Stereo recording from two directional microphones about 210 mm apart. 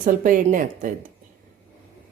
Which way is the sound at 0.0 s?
40° right (ahead or behind).